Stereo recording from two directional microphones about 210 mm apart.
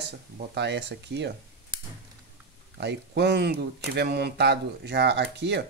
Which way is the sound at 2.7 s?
50° right (ahead or behind).